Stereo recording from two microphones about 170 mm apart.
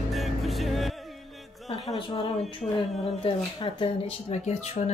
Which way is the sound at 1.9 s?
30° left (ahead or behind).